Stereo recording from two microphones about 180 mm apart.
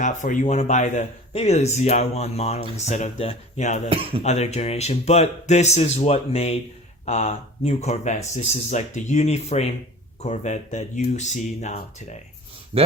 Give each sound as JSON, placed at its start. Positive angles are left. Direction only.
{"t": 0.0, "sound": "speech", "side_deg": 45}
{"t": 3.8, "sound": "speech", "side_deg": -30}
{"t": 4.2, "sound": "speech", "side_deg": 40}